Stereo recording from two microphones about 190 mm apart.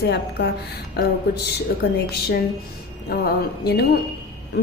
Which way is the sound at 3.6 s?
60° left (ahead or behind).